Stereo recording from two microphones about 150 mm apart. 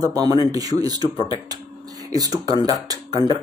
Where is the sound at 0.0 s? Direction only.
25° right (ahead or behind).